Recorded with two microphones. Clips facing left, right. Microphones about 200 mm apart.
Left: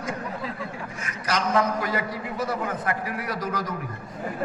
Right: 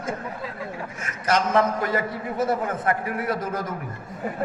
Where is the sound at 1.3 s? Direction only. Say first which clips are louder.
Right 3 dB; 45° right (ahead or behind).